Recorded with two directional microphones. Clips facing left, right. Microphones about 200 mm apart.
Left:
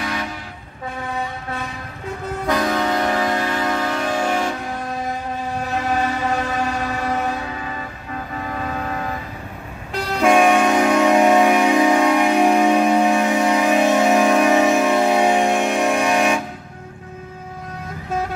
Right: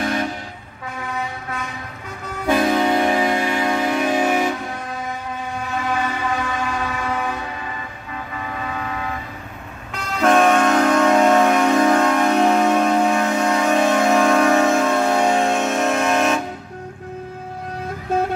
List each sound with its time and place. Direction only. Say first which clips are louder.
0.0 s vehicle: right 4 dB; 45° right (ahead or behind)
2.4 s music: right 3 dB; 25° right (ahead or behind)
5.6 s a sound: left 2 dB; 40° left (ahead or behind)
8.5 s vehicle: left 2 dB; 40° left (ahead or behind)
10.2 s train: even; 10° left (ahead or behind)